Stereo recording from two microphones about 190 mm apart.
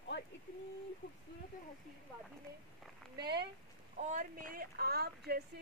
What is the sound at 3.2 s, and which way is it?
Speech, 60° right (ahead or behind).